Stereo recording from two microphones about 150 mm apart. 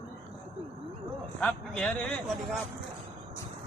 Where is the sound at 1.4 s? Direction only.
10° left (ahead or behind).